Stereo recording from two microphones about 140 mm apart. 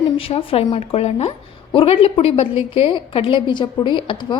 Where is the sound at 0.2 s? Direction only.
40° left (ahead or behind).